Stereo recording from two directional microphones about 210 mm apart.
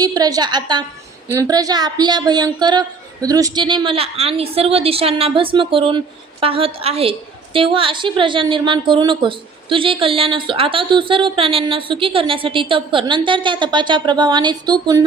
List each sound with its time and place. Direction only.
0.0 s a woman's voice: 20° right (ahead or behind)